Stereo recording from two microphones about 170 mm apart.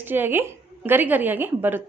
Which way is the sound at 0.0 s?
10° right (ahead or behind).